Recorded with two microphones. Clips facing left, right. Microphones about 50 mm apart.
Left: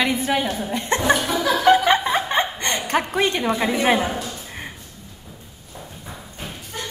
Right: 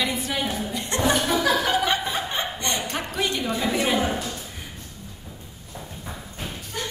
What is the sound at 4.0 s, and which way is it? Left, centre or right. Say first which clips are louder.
Speech: left 1 dB; centre.